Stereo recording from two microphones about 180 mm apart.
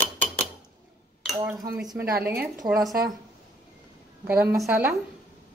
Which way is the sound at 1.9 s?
15° right (ahead or behind).